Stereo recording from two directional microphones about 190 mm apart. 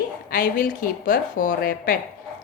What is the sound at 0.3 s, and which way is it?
A woman's voice, 45° left (ahead or behind).